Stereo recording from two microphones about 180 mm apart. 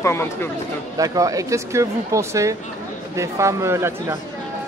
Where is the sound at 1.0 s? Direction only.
20° right (ahead or behind).